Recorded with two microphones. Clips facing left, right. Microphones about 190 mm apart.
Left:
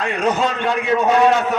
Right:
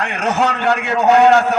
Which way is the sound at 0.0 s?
70° right (ahead or behind).